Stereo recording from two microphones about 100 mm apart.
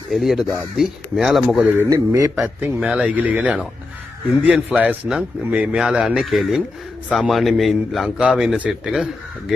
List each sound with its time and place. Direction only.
0.1 s a man's voice: 5° right (ahead or behind)
1.9 s a man's voice: 35° right (ahead or behind)
2.4 s speech: 25° right (ahead or behind)
2.8 s a man's voice: 10° right (ahead or behind)
4.4 s a man's voice: 15° right (ahead or behind)